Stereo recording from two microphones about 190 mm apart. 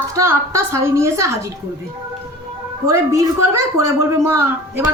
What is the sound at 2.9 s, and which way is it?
A woman's voice, 15° right (ahead or behind).